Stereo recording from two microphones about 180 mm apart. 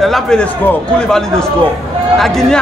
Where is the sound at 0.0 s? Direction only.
Centre (ahead or behind).